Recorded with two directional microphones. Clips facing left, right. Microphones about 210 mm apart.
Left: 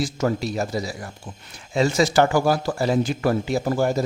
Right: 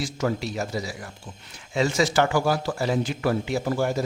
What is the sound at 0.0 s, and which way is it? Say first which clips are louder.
Speech: left 3 dB; 40° left (ahead or behind).